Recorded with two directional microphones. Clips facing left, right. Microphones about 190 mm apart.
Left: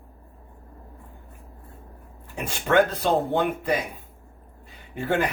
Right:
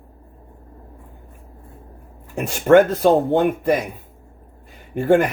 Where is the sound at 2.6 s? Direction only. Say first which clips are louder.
Right 8 dB; 45° right (ahead or behind).